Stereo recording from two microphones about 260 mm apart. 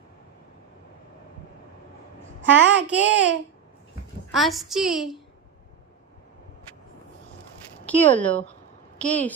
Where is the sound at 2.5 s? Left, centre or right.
Right.